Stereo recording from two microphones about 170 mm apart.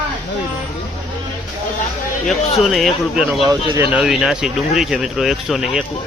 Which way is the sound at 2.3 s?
Centre (ahead or behind).